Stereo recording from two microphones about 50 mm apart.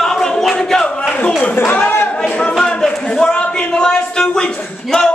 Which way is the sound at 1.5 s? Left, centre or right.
Left.